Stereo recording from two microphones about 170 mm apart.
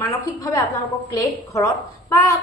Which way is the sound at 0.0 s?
20° left (ahead or behind).